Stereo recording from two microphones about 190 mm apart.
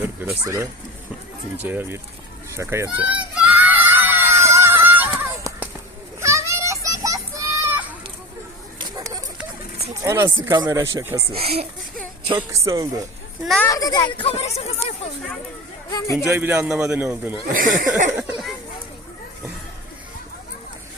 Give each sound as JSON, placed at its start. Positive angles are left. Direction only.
{"t": 0.0, "sound": "speech", "side_deg": -10}
{"t": 2.6, "sound": "crowd", "side_deg": -15}
{"t": 6.1, "sound": "children playing", "side_deg": -15}
{"t": 8.8, "sound": "a sound", "side_deg": -20}
{"t": 10.0, "sound": "speech", "side_deg": -15}
{"t": 11.3, "sound": "speech", "side_deg": -30}
{"t": 12.4, "sound": "speech", "side_deg": -15}
{"t": 13.4, "sound": "a child's voice", "side_deg": 0}
{"t": 13.7, "sound": "speech", "side_deg": 20}
{"t": 15.9, "sound": "a man's voice", "side_deg": 20}
{"t": 16.3, "sound": "speech", "side_deg": -15}
{"t": 17.4, "sound": "speech", "side_deg": -45}
{"t": 18.2, "sound": "a sound", "side_deg": -5}